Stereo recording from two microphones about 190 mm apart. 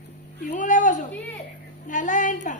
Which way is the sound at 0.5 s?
40° left (ahead or behind).